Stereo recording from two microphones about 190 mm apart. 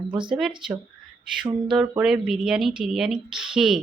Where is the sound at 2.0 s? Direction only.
Centre (ahead or behind).